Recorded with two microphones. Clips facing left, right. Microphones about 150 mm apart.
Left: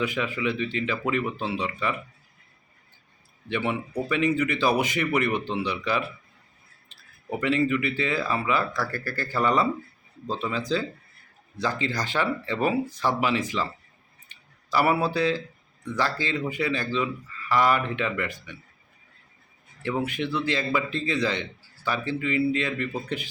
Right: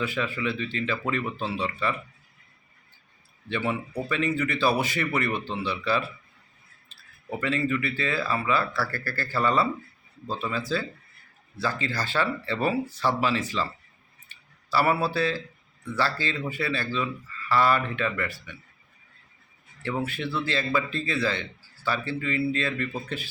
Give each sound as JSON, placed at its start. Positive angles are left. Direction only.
{"t": 0.0, "sound": "speech", "side_deg": 15}
{"t": 3.5, "sound": "speech", "side_deg": 15}
{"t": 14.3, "sound": "a sound", "side_deg": 15}
{"t": 16.0, "sound": "speech", "side_deg": 15}
{"t": 20.1, "sound": "speech", "side_deg": 15}